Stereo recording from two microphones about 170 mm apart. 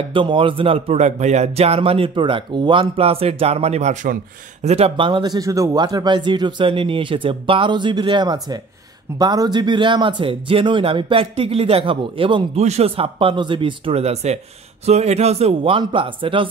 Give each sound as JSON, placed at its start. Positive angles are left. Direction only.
{"t": 0.1, "sound": "speech", "side_deg": -30}
{"t": 4.6, "sound": "speech", "side_deg": -35}